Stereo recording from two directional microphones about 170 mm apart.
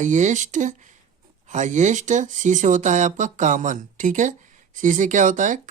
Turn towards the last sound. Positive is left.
turn(degrees=-50)  # may be behind; listen again after turning